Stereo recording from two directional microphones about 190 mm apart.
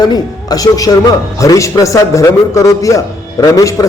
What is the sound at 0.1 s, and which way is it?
A man's voice, 20° left (ahead or behind).